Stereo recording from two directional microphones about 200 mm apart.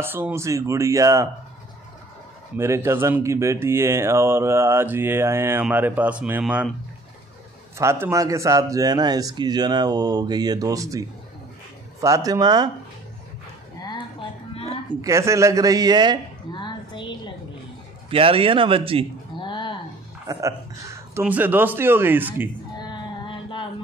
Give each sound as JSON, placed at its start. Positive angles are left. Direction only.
{"t": 0.0, "sound": "speech", "side_deg": -10}
{"t": 2.5, "sound": "speech", "side_deg": -15}
{"t": 7.7, "sound": "a man's voice", "side_deg": -15}
{"t": 15.0, "sound": "speech", "side_deg": -15}
{"t": 16.5, "sound": "a sound", "side_deg": 25}
{"t": 18.1, "sound": "a man's voice", "side_deg": -25}
{"t": 19.3, "sound": "a sound", "side_deg": 25}
{"t": 20.2, "sound": "speech", "side_deg": -15}
{"t": 22.8, "sound": "music", "side_deg": 25}